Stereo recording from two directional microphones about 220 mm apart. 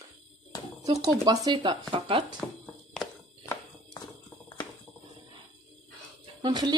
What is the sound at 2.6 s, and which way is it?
Fire alarm, 10° left (ahead or behind).